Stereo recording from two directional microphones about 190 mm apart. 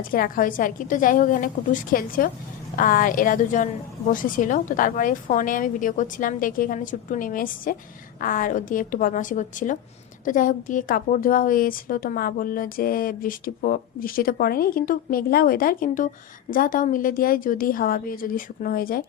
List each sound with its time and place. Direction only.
0.1 s a woman's voice: 50° left (ahead or behind)